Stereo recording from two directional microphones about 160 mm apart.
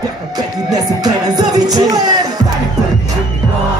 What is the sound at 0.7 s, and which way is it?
Music, 25° right (ahead or behind).